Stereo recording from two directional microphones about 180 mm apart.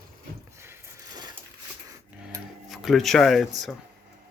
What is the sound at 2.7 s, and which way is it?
Speech, centre (ahead or behind).